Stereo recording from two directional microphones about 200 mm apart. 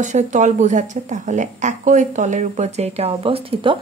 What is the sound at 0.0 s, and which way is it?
Speech, 40° right (ahead or behind).